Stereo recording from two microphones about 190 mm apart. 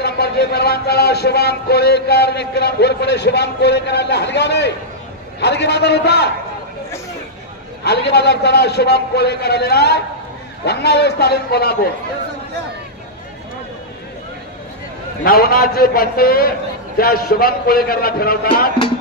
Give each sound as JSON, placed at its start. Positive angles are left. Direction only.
{"t": 0.0, "sound": "a man's voice", "side_deg": 60}
{"t": 7.8, "sound": "a man's voice", "side_deg": 60}
{"t": 15.2, "sound": "a man's voice", "side_deg": 50}